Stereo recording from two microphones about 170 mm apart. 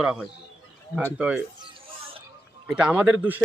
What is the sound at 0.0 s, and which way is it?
Speech, 5° right (ahead or behind).